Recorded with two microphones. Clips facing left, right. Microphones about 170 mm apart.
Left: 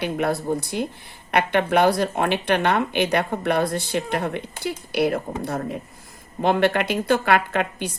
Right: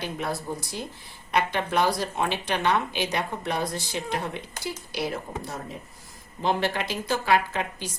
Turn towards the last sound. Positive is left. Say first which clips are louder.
# left 6 dB
turn(degrees=60)  # may be behind; listen again after turning